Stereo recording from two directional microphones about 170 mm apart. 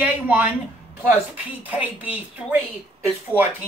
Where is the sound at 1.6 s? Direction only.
10° right (ahead or behind).